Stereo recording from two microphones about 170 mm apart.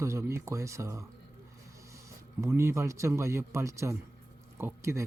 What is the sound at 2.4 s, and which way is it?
A man's voice, 15° right (ahead or behind).